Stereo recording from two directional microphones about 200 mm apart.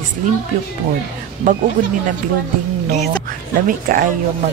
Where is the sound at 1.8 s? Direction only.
40° right (ahead or behind).